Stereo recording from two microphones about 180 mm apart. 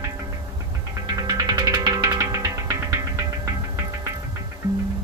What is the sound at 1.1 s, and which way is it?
Music, 20° right (ahead or behind).